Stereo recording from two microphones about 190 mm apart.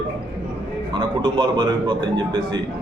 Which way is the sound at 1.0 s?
25° right (ahead or behind).